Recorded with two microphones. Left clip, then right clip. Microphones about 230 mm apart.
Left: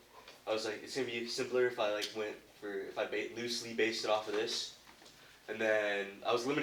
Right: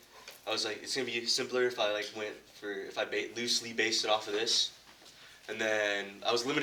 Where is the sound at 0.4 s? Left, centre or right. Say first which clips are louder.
Right 2 dB; right.